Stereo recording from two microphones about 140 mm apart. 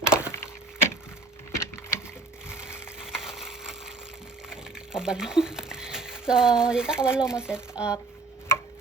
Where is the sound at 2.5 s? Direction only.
15° left (ahead or behind).